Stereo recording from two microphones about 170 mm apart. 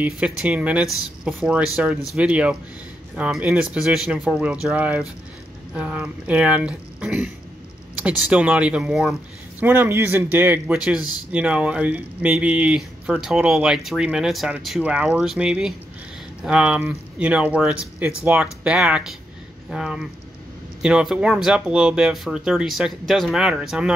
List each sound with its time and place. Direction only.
0.0 s speech: 5° right (ahead or behind)